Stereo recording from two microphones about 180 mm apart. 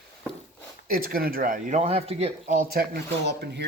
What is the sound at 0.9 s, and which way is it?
Speech, 55° right (ahead or behind).